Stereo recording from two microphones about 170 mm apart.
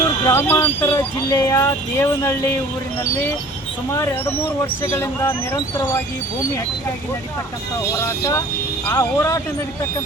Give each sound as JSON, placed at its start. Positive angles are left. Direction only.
{"t": 0.3, "sound": "speech", "side_deg": 15}
{"t": 5.5, "sound": "speech", "side_deg": 25}
{"t": 8.9, "sound": "speech", "side_deg": 20}